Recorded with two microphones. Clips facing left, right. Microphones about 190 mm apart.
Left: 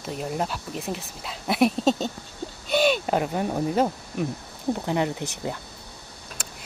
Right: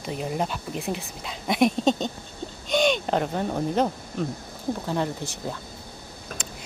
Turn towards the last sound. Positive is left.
turn(degrees=-50)  # may be behind; listen again after turning